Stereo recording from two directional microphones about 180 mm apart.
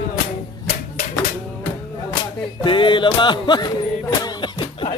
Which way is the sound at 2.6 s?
25° left (ahead or behind).